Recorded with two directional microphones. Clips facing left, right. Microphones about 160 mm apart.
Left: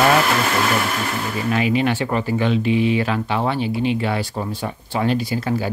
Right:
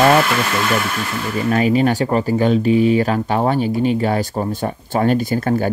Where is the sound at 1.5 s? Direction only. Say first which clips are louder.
Right 4 dB; 40° right (ahead or behind).